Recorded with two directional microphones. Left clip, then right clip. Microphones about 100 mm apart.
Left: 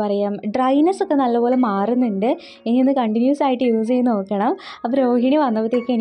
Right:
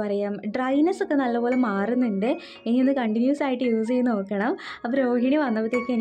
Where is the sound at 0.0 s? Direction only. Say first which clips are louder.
Left 6 dB; 50° left (ahead or behind).